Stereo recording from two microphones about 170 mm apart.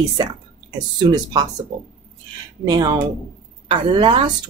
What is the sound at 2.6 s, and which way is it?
Speech, 25° right (ahead or behind).